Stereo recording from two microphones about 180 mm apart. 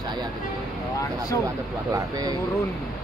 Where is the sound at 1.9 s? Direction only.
20° right (ahead or behind).